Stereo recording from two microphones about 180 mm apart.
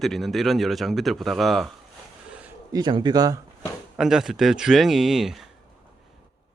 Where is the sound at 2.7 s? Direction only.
25° right (ahead or behind).